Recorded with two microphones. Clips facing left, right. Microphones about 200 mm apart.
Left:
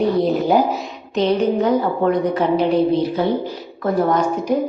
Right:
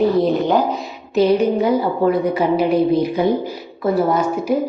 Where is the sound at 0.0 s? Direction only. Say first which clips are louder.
Right 2 dB; centre (ahead or behind).